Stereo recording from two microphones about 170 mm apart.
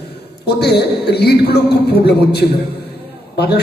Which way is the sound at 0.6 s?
75° left (ahead or behind).